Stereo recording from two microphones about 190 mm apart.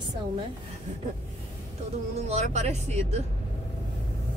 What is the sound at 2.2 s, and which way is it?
Speech, 35° right (ahead or behind).